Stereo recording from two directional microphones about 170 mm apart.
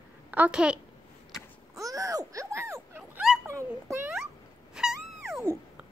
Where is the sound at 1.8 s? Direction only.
20° right (ahead or behind).